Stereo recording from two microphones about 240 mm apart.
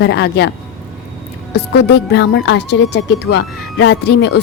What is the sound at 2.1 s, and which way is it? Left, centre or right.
A woman's voice, left.